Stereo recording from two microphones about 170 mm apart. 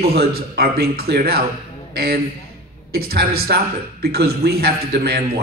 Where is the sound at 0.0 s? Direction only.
65° right (ahead or behind).